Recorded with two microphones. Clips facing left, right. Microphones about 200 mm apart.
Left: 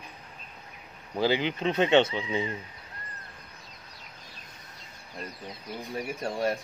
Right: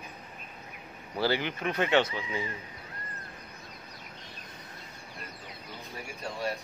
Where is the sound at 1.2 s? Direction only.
15° left (ahead or behind).